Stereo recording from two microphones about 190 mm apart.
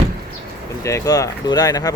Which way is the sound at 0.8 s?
15° left (ahead or behind).